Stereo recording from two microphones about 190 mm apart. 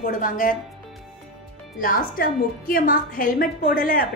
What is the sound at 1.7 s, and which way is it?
A woman's voice, 50° left (ahead or behind).